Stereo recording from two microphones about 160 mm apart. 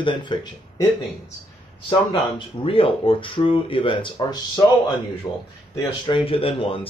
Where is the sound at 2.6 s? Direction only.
35° left (ahead or behind).